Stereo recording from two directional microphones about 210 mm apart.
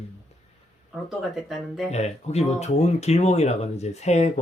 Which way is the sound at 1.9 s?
30° left (ahead or behind).